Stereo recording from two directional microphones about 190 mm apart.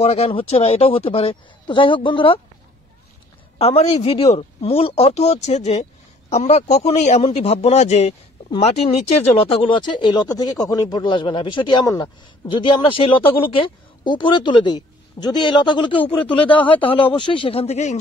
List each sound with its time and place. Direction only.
0.0 s speech: 35° left (ahead or behind)
3.5 s speech: 30° left (ahead or behind)